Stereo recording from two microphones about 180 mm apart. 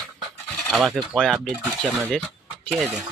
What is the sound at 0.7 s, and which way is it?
Speech, centre (ahead or behind).